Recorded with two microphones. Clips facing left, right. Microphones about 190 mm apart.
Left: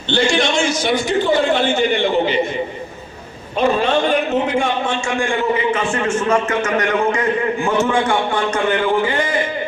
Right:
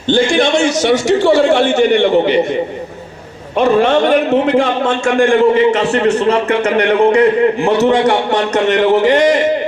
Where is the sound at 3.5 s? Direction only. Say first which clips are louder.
Right 5 dB; 70° right (ahead or behind); by 5.4 s 55° right (ahead or behind).